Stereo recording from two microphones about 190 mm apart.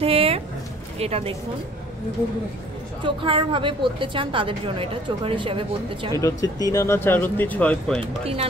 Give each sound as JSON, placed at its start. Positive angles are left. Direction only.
{"t": 0.0, "sound": "speech", "side_deg": -30}
{"t": 3.0, "sound": "a woman's voice", "side_deg": -25}
{"t": 6.2, "sound": "speech", "side_deg": 15}